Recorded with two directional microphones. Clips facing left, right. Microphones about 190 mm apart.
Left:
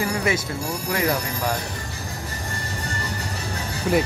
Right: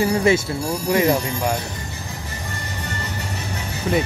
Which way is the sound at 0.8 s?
25° right (ahead or behind).